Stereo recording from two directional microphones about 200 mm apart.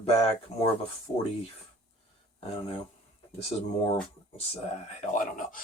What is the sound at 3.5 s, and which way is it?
Speech, 20° left (ahead or behind).